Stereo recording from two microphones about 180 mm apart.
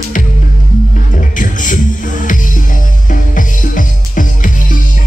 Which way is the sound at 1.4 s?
45° left (ahead or behind).